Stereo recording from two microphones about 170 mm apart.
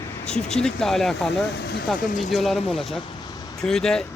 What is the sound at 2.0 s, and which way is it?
Speech, 50° left (ahead or behind).